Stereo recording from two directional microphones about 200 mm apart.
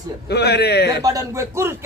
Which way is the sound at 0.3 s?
55° left (ahead or behind).